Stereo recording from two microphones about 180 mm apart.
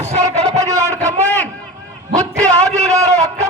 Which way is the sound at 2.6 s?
40° right (ahead or behind).